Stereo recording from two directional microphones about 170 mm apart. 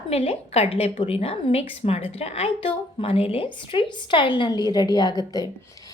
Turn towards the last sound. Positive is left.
turn(degrees=20)  # may be behind; listen again after turning